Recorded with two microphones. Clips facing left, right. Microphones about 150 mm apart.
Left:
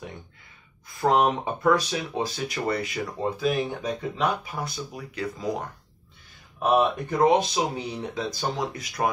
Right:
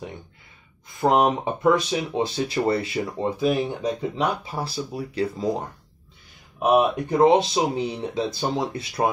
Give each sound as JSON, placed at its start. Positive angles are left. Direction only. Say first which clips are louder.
{"t": 1.0, "sound": "speech", "louder": "right 2 dB", "side_deg": -20}
{"t": 3.4, "sound": "speech", "louder": "right 4 dB", "side_deg": -10}
{"t": 4.5, "sound": "speech", "louder": "right 4 dB", "side_deg": -30}
{"t": 6.6, "sound": "speech", "louder": "right 3 dB", "side_deg": -15}